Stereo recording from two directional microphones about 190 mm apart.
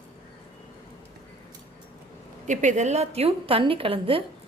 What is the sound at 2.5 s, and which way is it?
A woman's voice, 40° right (ahead or behind).